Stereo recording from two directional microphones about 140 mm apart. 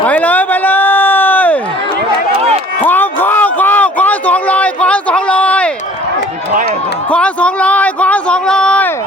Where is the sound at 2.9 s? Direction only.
15° left (ahead or behind).